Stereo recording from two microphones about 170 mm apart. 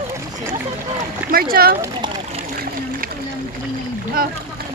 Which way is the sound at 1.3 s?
60° right (ahead or behind).